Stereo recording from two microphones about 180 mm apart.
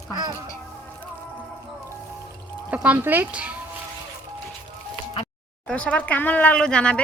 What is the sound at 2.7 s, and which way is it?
Speech, 10° right (ahead or behind).